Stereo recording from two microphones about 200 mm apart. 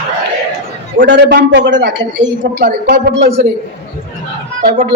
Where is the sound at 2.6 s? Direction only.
50° right (ahead or behind).